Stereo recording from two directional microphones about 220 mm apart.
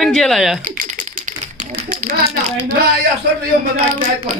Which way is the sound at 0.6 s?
35° right (ahead or behind).